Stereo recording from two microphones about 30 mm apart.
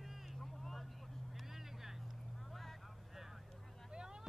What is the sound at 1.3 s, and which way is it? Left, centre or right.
Vehicle, centre.